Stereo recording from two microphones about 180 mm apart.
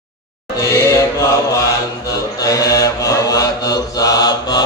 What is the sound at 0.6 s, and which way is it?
Chant, 15° left (ahead or behind).